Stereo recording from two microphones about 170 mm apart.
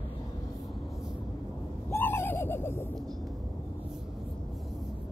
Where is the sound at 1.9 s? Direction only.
15° left (ahead or behind).